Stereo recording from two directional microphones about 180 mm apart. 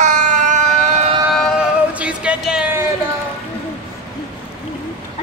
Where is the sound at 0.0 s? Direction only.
40° right (ahead or behind).